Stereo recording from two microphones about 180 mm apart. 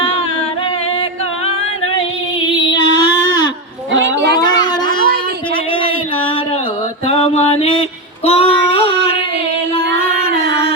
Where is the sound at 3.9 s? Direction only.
90° right; by 4.4 s 75° right (ahead or behind).